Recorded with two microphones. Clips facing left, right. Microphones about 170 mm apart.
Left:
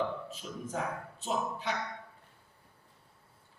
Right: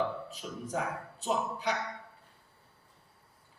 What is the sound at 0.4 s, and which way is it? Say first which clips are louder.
Speech: right 2 dB; 55° right (ahead or behind).